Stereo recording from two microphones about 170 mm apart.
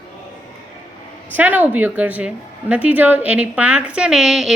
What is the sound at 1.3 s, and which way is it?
A woman's voice, 10° right (ahead or behind).